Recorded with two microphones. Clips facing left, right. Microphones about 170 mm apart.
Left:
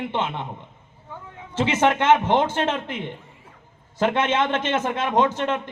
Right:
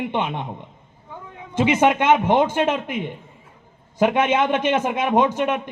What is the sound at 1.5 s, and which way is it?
A man's voice, 15° right (ahead or behind).